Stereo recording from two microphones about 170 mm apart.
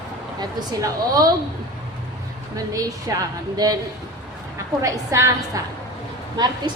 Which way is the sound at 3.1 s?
20° right (ahead or behind).